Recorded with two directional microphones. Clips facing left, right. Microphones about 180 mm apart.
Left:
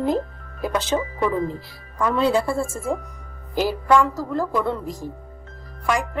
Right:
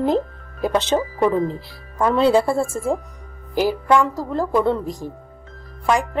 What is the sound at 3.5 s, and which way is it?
A woman's voice, 20° right (ahead or behind).